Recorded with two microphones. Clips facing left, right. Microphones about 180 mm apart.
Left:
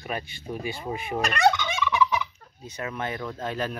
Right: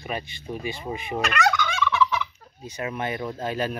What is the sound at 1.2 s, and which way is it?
Gobble, 30° left (ahead or behind).